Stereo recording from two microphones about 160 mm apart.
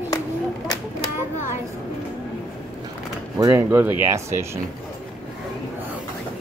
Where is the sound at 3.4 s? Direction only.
15° right (ahead or behind).